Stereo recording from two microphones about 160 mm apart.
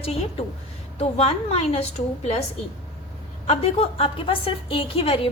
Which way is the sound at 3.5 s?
40° left (ahead or behind).